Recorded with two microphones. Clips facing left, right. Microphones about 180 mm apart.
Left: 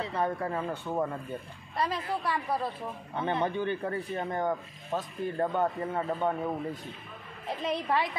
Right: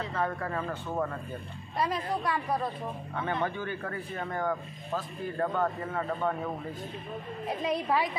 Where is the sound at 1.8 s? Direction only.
Centre (ahead or behind).